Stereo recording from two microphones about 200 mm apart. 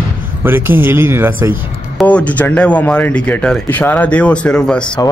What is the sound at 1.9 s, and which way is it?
Speech, 5° left (ahead or behind).